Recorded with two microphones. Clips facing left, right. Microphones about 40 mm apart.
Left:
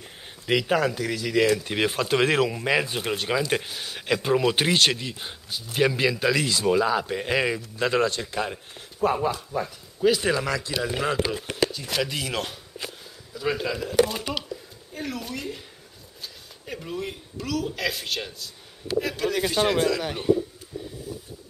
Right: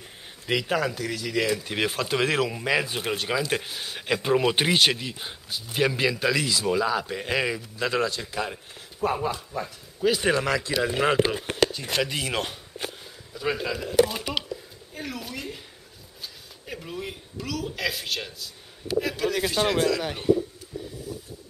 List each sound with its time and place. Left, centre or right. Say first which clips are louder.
0.0 s speech: left 2 dB; centre
10.2 s speech: right 1 dB; centre
11.1 s speech: right 3 dB; right
11.9 s speech: right 1 dB; centre